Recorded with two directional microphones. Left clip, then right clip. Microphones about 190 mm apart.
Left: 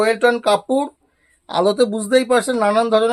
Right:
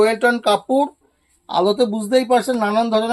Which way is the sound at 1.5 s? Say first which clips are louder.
Left 1 dB; 40° left (ahead or behind).